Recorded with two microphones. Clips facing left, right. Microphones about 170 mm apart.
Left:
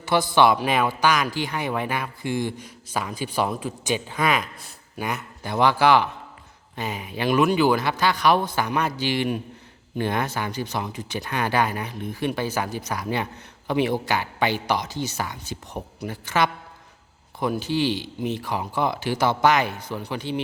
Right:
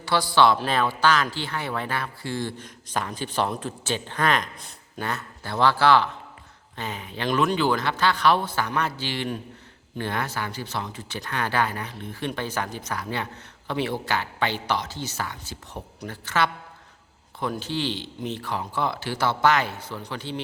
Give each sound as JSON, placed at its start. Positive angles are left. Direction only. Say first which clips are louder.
{"t": 0.0, "sound": "a man's voice", "louder": "left 2 dB", "side_deg": 20}